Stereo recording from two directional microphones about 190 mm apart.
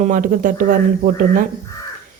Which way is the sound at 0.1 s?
45° right (ahead or behind).